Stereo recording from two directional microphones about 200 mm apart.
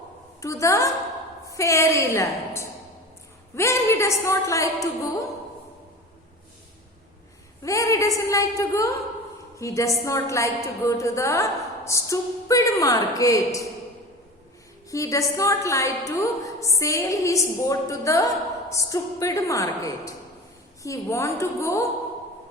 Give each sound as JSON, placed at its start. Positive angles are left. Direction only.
{"t": 0.4, "sound": "a woman's voice", "side_deg": 15}
{"t": 7.6, "sound": "a woman's voice", "side_deg": 15}
{"t": 14.8, "sound": "a woman's voice", "side_deg": 15}